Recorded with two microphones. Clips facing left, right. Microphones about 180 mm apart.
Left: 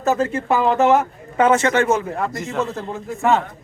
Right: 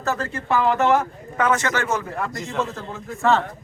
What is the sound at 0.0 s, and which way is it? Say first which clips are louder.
A man's voice: left 7 dB; 20° left (ahead or behind).